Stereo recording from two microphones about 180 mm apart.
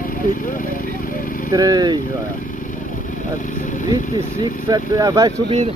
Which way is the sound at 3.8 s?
25° right (ahead or behind).